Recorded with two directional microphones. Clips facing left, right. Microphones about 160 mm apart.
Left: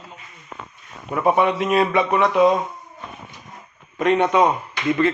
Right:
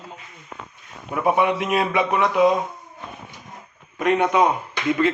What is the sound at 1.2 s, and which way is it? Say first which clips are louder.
Speech: left 2 dB; 5° right (ahead or behind).